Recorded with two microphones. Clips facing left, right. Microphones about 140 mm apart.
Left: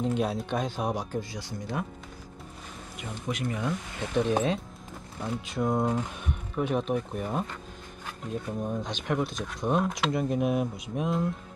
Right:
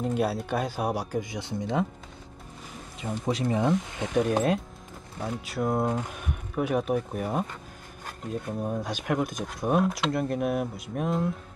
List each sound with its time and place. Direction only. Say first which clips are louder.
0.0 s speech: right 1 dB; 5° right (ahead or behind)
1.3 s speech: right 5 dB; 20° right (ahead or behind)
3.0 s speech: right 5 dB; 35° right (ahead or behind)
4.0 s speech: even; 10° right (ahead or behind)
5.5 s mantra: even; 5° right (ahead or behind)
6.5 s speech: right 2 dB; 5° right (ahead or behind)
8.6 s speech: right 3 dB; 10° right (ahead or behind)
10.2 s mantra: left 1 dB; centre (ahead or behind)